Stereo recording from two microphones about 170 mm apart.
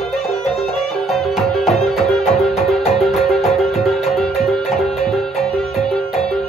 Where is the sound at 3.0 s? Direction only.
Centre (ahead or behind).